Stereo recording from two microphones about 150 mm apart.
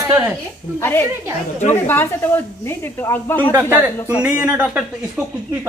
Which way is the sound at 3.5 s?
10° right (ahead or behind).